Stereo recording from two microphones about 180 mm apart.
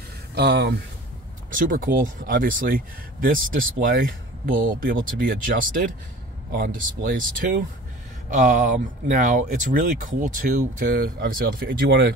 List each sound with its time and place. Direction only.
0.3 s speech: 65° right (ahead or behind)
1.5 s speech: 50° right (ahead or behind)